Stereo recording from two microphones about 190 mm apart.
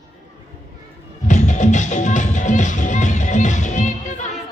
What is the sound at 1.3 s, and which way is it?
Music, 40° left (ahead or behind).